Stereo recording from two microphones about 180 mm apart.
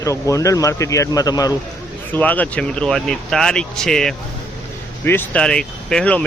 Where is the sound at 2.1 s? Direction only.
10° left (ahead or behind).